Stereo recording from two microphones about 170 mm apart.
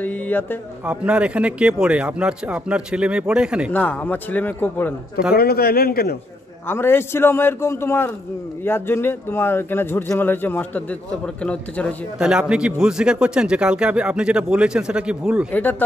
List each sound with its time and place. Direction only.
0.0 s speech: 10° left (ahead or behind)
0.8 s speech: 5° right (ahead or behind)
3.7 s speech: 10° left (ahead or behind)
5.3 s a man's voice: 65° left (ahead or behind)
6.7 s speech: 15° left (ahead or behind)
12.2 s a man's voice: 5° right (ahead or behind)